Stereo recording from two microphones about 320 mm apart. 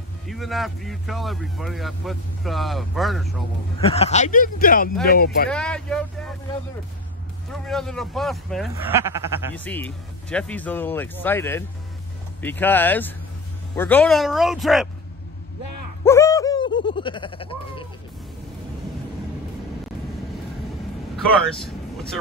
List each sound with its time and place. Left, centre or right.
0.3 s speech: centre
3.8 s speech: centre
5.5 s speech: centre
7.6 s speech: centre
9.7 s speech: centre
16.0 s a sound: centre